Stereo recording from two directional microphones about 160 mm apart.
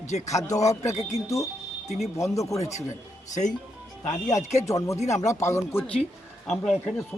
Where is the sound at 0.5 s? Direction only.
20° left (ahead or behind).